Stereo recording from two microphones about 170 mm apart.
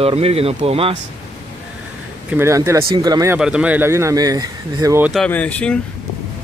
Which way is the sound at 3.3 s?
5° right (ahead or behind).